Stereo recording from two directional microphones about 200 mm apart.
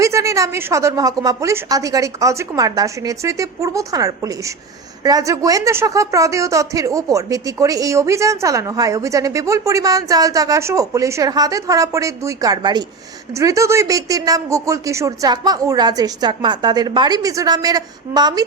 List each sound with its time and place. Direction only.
0.0 s speech: 15° right (ahead or behind)